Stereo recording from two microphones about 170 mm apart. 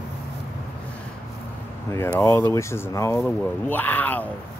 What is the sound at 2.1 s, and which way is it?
Speech, 15° left (ahead or behind).